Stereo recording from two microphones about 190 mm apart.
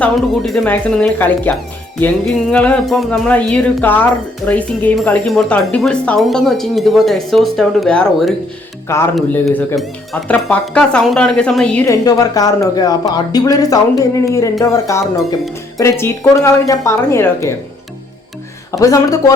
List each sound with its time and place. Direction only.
0.0 s speech: centre (ahead or behind)
2.0 s music: 5° left (ahead or behind)
4.4 s speech: 5° left (ahead or behind)
12.0 s speech: 20° left (ahead or behind)
14.6 s music: 15° left (ahead or behind)
18.7 s music: 20° left (ahead or behind)